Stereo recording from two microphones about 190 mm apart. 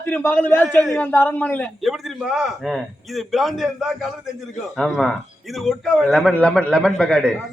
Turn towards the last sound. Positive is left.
turn(degrees=5)  # may be behind; listen again after turning